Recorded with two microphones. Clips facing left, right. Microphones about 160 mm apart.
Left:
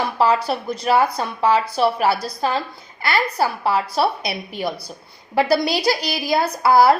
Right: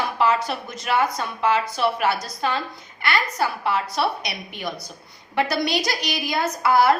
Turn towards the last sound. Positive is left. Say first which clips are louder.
# left 4 dB
turn(degrees=35)  # may be behind; listen again after turning